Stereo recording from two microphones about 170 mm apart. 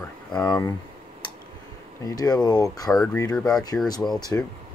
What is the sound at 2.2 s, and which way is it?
Speech, 25° left (ahead or behind).